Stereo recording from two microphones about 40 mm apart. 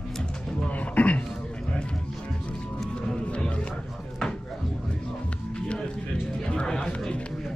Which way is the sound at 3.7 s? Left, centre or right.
Centre.